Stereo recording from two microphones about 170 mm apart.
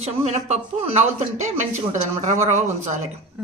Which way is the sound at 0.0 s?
40° right (ahead or behind).